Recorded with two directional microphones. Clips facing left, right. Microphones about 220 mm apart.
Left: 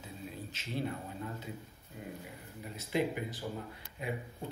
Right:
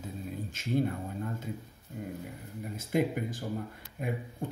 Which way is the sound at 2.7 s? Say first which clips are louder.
Right 4 dB; 45° right (ahead or behind).